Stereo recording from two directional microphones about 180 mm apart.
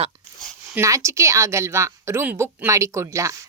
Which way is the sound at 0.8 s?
15° right (ahead or behind).